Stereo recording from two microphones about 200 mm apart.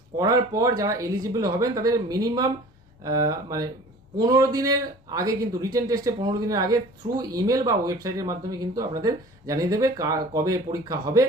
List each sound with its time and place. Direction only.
0.2 s speech: 15° right (ahead or behind)